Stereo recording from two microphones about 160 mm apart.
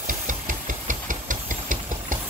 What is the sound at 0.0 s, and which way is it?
Engine, 55° right (ahead or behind).